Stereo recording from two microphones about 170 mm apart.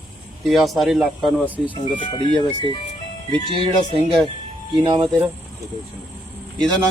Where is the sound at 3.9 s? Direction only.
25° right (ahead or behind).